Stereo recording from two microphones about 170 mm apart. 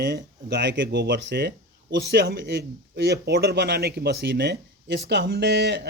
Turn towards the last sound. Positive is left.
turn(degrees=-80)